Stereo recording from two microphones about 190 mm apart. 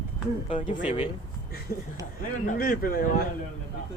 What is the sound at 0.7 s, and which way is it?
Speech, 40° left (ahead or behind).